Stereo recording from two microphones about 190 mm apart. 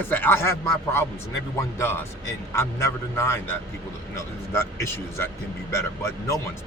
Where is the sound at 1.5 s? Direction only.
10° left (ahead or behind).